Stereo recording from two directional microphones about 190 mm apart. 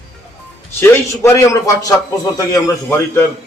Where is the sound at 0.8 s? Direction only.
15° left (ahead or behind).